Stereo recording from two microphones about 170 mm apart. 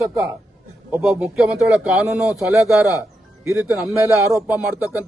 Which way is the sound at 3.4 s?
15° right (ahead or behind).